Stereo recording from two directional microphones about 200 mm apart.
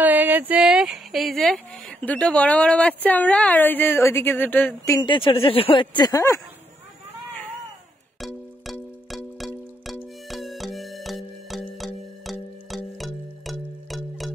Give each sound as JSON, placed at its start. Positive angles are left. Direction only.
{"t": 0.0, "sound": "speech", "side_deg": -10}
{"t": 5.0, "sound": "speech", "side_deg": 25}
{"t": 8.2, "sound": "music", "side_deg": 0}